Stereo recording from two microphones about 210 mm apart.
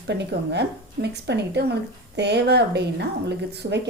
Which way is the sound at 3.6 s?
40° right (ahead or behind).